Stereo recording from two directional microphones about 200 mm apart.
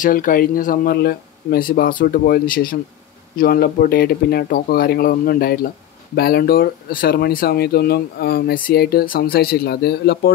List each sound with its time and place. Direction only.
0.0 s speech: 45° left (ahead or behind)